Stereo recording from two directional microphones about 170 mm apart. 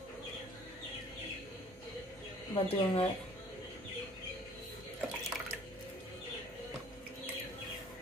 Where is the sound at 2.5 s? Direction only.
35° left (ahead or behind).